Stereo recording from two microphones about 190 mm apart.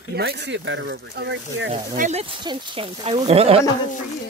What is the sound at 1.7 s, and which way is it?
Speech, 35° right (ahead or behind).